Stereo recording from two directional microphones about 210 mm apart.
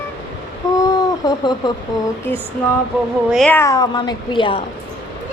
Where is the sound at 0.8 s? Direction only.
20° left (ahead or behind).